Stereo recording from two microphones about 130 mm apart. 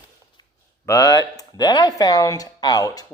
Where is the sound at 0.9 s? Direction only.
30° left (ahead or behind).